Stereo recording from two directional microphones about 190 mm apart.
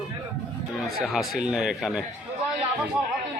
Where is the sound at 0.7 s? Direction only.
Centre (ahead or behind).